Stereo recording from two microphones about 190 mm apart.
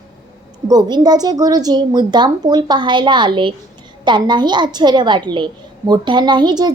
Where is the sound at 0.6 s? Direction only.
20° right (ahead or behind).